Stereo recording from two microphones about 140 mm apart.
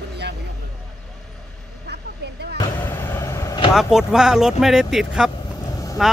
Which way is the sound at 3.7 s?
5° right (ahead or behind).